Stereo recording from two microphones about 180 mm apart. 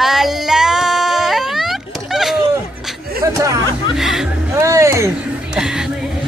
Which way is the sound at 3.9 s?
Centre (ahead or behind).